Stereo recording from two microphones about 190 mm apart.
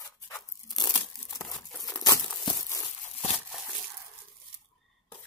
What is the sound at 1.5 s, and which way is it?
Crumpling, centre (ahead or behind).